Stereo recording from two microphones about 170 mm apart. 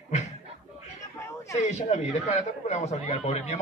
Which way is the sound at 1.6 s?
45° left (ahead or behind).